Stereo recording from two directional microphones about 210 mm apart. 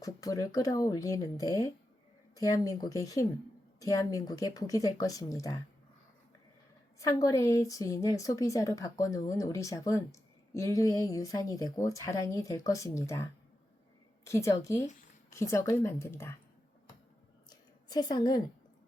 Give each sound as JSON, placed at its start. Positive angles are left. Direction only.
{"t": 0.0, "sound": "a woman's voice", "side_deg": 15}
{"t": 7.0, "sound": "a woman's voice", "side_deg": 15}
{"t": 17.5, "sound": "a sound", "side_deg": 20}